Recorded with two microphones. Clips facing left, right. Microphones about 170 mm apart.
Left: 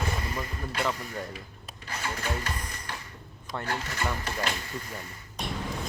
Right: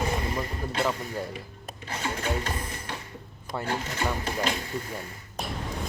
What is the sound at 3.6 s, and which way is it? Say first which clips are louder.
Speech: right 3 dB; 20° right (ahead or behind).